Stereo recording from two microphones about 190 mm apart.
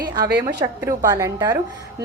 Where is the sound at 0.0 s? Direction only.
20° right (ahead or behind).